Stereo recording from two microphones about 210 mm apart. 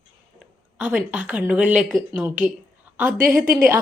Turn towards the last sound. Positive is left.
turn(degrees=-40)  # may be behind; listen again after turning